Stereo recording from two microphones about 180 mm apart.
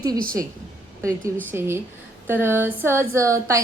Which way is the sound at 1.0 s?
15° right (ahead or behind).